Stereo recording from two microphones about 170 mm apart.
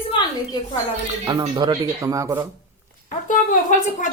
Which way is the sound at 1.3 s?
25° right (ahead or behind).